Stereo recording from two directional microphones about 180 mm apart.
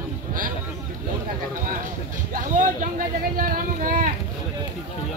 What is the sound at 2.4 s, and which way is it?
Speech, 45° right (ahead or behind).